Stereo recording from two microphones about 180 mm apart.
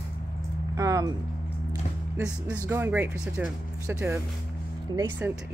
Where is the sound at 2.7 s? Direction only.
10° right (ahead or behind).